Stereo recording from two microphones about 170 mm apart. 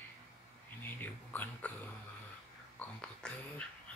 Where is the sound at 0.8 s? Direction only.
10° left (ahead or behind).